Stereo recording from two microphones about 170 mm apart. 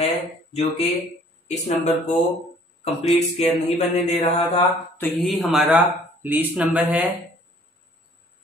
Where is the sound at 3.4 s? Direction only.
40° left (ahead or behind).